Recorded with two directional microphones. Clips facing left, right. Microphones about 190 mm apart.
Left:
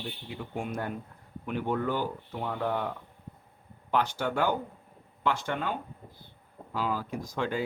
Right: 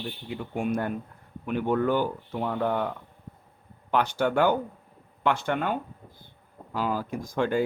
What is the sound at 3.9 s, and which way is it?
Speech, 60° right (ahead or behind).